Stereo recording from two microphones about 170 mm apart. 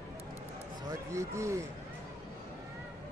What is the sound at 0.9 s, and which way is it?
Speech, 15° right (ahead or behind).